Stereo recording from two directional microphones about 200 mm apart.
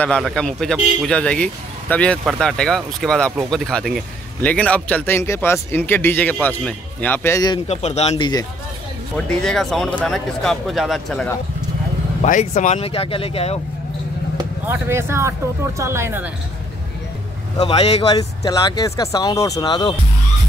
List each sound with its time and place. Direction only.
0.0 s a man's voice: 5° left (ahead or behind)
7.6 s speech: 30° left (ahead or behind)
9.1 s speech: 5° left (ahead or behind)
12.2 s speech: 35° left (ahead or behind)
14.7 s speech: 10° right (ahead or behind)
17.6 s speech: 25° left (ahead or behind)
18.1 s speech: 20° left (ahead or behind)